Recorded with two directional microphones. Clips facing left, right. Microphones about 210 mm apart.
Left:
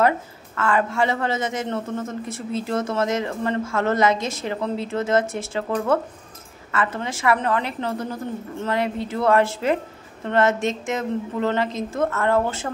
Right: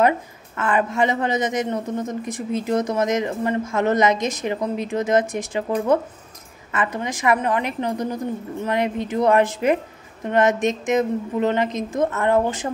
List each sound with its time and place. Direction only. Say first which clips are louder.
0.6 s a man's voice: right 1 dB; 20° right (ahead or behind)